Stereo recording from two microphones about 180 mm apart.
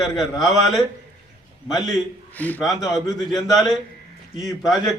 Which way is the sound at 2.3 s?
10° left (ahead or behind).